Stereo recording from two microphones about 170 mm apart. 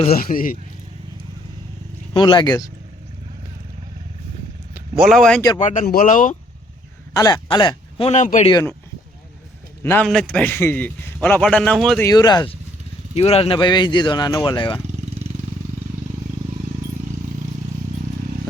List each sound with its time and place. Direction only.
0.1 s a man's voice: 60° left (ahead or behind)
2.1 s speech: 25° left (ahead or behind)
4.7 s speech: 5° right (ahead or behind)
5.5 s speech: 45° left (ahead or behind)
7.1 s speech: 20° left (ahead or behind)
8.1 s speech: 45° left (ahead or behind)
9.8 s a man's voice: 10° left (ahead or behind)
12.0 s speech: 25° left (ahead or behind)
13.1 s speech: 35° left (ahead or behind)